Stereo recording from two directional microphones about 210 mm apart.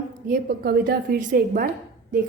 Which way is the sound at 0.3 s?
45° right (ahead or behind).